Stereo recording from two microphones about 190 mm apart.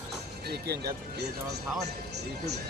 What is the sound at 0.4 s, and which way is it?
Speech, 60° right (ahead or behind).